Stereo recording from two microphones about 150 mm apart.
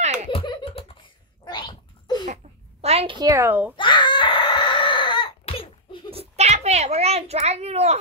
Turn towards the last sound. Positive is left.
turn(degrees=-45)  # may be behind; listen again after turning